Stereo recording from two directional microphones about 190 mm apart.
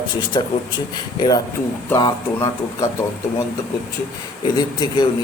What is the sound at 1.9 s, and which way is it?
A man's voice, 20° left (ahead or behind).